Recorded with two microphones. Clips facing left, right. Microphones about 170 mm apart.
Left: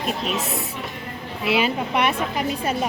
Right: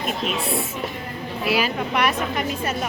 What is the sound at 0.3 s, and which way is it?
Speech, 40° left (ahead or behind).